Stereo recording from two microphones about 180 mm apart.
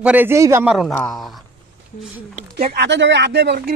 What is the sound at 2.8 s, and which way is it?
Speech, 85° right.